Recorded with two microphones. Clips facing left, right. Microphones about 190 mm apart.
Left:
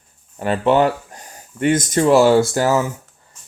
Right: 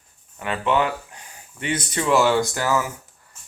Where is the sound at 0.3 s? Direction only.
35° left (ahead or behind).